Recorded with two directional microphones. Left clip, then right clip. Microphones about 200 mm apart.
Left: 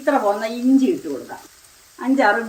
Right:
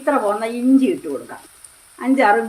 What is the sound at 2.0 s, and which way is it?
Speech, 30° right (ahead or behind).